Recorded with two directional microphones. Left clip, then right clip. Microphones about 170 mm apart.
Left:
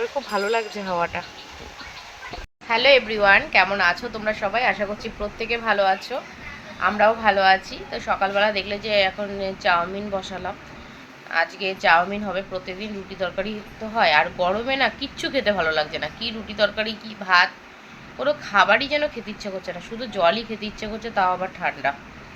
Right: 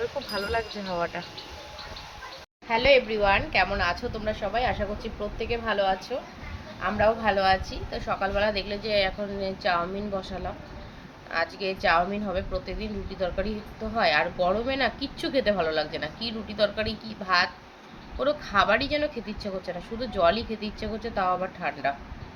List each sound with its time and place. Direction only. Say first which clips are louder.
0.3 s speech: left 6 dB; 20° left (ahead or behind)
2.6 s a woman's voice: left 4 dB; 5° right (ahead or behind)